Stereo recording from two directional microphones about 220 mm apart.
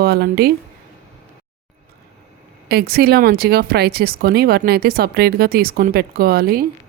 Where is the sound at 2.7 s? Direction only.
45° right (ahead or behind).